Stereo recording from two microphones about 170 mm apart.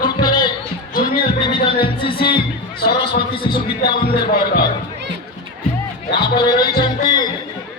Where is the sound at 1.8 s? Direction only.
30° left (ahead or behind).